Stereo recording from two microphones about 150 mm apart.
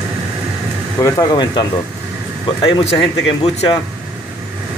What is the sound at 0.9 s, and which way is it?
Speech, 20° left (ahead or behind).